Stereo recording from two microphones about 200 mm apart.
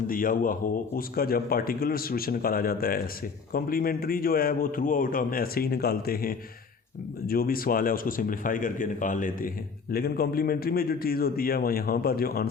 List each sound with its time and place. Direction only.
0.1 s a man's voice: 45° left (ahead or behind)